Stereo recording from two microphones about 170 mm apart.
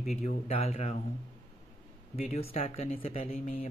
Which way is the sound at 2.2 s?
35° left (ahead or behind).